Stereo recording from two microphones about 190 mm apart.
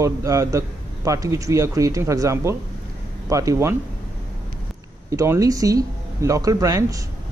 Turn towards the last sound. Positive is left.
turn(degrees=-15)  # may be behind; listen again after turning